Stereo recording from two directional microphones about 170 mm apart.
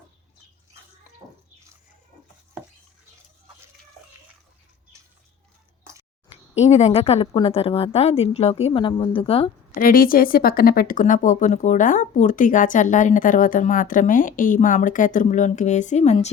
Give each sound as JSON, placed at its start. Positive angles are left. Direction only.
{"t": 6.2, "sound": "speech", "side_deg": 40}
{"t": 9.7, "sound": "speech", "side_deg": 55}